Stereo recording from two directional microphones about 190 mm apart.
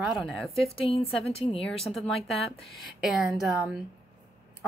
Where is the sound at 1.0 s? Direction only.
30° left (ahead or behind).